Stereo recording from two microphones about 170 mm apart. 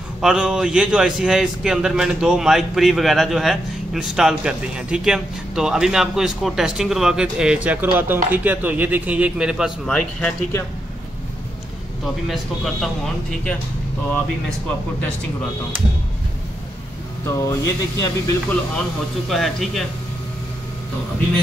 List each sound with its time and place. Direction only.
0.2 s a man's voice: 5° right (ahead or behind)
12.3 s a man's voice: centre (ahead or behind)
17.2 s speech: 20° left (ahead or behind)
19.2 s a man's voice: centre (ahead or behind)